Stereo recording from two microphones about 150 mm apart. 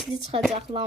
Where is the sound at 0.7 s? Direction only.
35° right (ahead or behind).